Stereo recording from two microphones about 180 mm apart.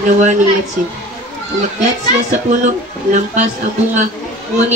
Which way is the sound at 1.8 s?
40° right (ahead or behind).